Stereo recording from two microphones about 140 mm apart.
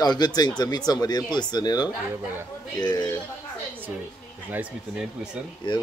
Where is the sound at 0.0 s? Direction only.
30° left (ahead or behind).